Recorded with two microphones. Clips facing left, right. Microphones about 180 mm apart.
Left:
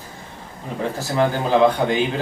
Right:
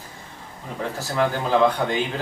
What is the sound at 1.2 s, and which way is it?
Speech, 25° left (ahead or behind).